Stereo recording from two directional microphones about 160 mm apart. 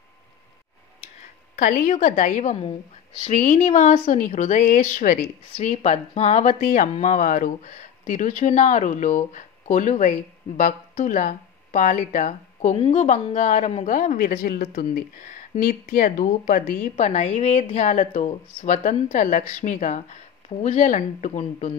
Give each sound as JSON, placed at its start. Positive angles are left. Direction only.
{"t": 1.6, "sound": "speech", "side_deg": 55}